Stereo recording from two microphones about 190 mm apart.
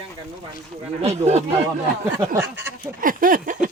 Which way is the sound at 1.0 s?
35° right (ahead or behind).